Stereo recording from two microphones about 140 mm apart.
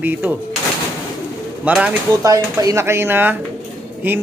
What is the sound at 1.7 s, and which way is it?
Speech, 10° right (ahead or behind).